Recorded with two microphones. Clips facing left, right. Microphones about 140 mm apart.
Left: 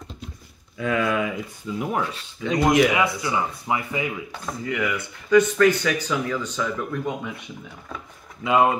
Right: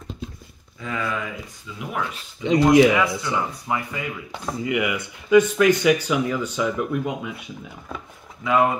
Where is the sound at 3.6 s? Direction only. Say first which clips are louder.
Left 1 dB; 15° left (ahead or behind).